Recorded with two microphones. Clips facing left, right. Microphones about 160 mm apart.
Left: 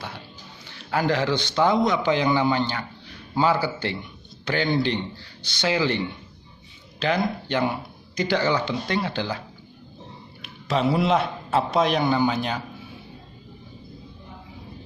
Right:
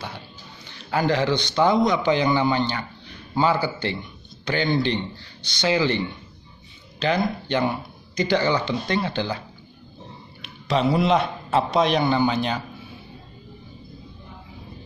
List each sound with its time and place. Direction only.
0.8 s speech: centre (ahead or behind)
7.0 s speech: 5° left (ahead or behind)
10.4 s a man's voice: 5° left (ahead or behind)